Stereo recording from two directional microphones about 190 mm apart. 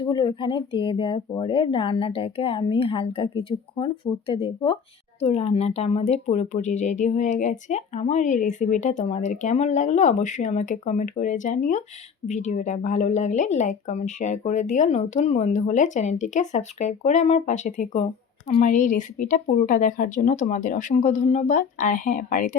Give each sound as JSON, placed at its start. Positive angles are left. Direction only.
{"t": 0.0, "sound": "speech", "side_deg": 25}